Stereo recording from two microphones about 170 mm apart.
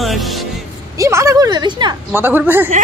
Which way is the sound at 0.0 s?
Centre (ahead or behind).